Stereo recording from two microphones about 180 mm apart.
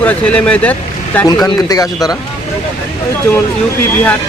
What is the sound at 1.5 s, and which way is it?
Speech, 20° left (ahead or behind).